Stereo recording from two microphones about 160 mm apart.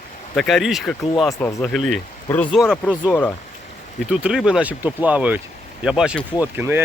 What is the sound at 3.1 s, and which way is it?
Speech, 10° left (ahead or behind).